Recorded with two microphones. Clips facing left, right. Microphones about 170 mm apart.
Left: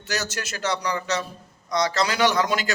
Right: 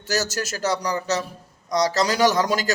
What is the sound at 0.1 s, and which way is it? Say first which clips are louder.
A man's voice: right 4 dB; 40° right (ahead or behind).